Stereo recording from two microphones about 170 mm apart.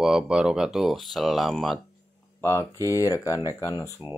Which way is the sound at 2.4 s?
15° left (ahead or behind).